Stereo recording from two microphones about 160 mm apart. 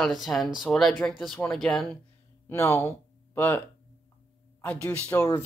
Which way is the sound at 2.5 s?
15° left (ahead or behind).